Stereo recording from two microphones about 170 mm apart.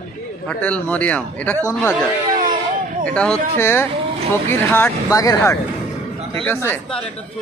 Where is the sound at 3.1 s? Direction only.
5° left (ahead or behind).